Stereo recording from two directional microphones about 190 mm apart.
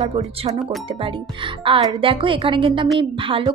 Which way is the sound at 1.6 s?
25° right (ahead or behind).